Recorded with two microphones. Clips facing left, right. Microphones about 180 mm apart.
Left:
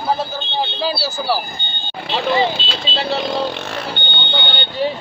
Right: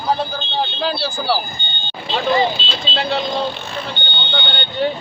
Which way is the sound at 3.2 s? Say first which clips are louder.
Left 1 dB; 80° left.